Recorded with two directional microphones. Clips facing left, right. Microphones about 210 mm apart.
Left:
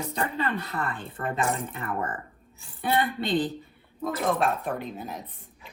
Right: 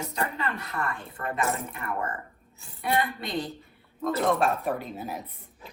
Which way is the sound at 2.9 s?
30° left (ahead or behind).